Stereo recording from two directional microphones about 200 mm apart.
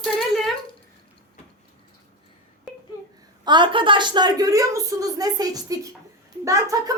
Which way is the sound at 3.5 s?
25° right (ahead or behind).